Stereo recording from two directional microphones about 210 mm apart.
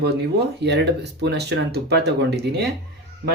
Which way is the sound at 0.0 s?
55° right (ahead or behind).